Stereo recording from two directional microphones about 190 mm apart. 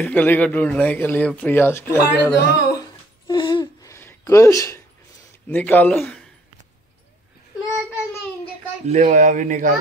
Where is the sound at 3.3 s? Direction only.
25° left (ahead or behind).